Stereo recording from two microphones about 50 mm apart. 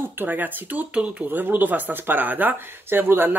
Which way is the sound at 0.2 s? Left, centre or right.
Right.